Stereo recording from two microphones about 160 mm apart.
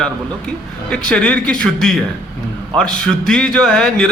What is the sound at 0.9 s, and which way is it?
A man's voice, 5° left (ahead or behind).